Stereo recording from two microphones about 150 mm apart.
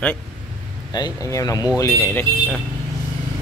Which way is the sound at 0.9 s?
25° left (ahead or behind).